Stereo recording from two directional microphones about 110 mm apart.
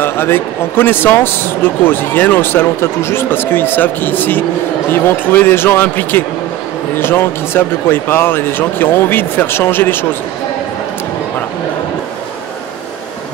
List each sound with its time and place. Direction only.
0.0 s speech: 20° left (ahead or behind)